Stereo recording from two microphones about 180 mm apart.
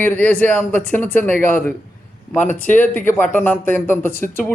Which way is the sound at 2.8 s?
10° left (ahead or behind).